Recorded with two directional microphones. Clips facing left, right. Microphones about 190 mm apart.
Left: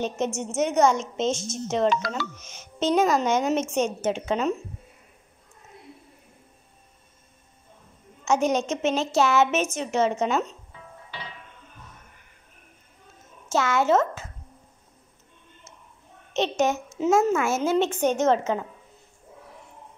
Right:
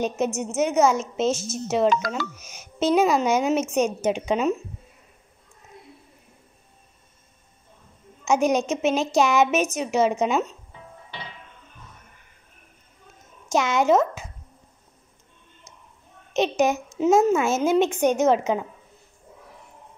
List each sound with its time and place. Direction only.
0.2 s a woman's voice: 10° right (ahead or behind)
1.9 s speech: 45° right (ahead or behind)
2.3 s a woman's voice: 10° right (ahead or behind)
8.3 s a woman's voice: 10° right (ahead or behind)
13.5 s a woman's voice: 15° right (ahead or behind)
16.3 s a woman's voice: 10° right (ahead or behind)